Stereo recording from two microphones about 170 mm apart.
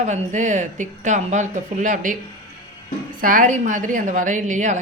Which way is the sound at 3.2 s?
50° right (ahead or behind).